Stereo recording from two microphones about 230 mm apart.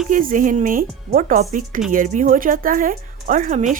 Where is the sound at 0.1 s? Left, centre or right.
Right.